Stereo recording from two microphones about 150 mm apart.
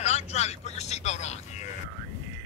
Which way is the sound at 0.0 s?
45° left (ahead or behind).